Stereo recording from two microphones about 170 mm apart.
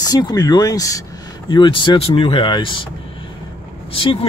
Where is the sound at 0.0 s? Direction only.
20° left (ahead or behind).